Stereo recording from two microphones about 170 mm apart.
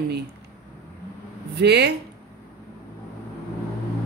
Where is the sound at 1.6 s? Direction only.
80° right.